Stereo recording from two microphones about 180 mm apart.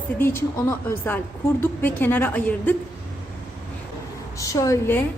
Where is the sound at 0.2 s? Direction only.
15° left (ahead or behind).